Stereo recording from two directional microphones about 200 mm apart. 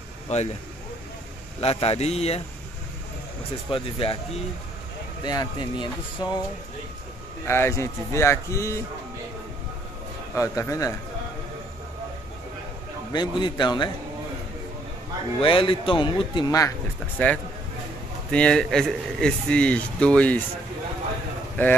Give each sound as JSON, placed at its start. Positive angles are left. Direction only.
{"t": 0.3, "sound": "a man's voice", "side_deg": 35}
{"t": 1.6, "sound": "a man's voice", "side_deg": 30}
{"t": 3.7, "sound": "speech", "side_deg": 25}
{"t": 5.2, "sound": "speech", "side_deg": 20}
{"t": 7.4, "sound": "speech", "side_deg": 15}
{"t": 10.3, "sound": "speech", "side_deg": 15}
{"t": 13.1, "sound": "speech", "side_deg": 20}
{"t": 15.4, "sound": "speech", "side_deg": 25}